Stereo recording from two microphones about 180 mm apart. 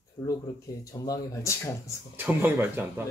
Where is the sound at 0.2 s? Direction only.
25° left (ahead or behind).